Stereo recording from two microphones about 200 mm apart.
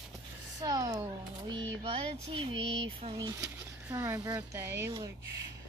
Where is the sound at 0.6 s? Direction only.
20° right (ahead or behind).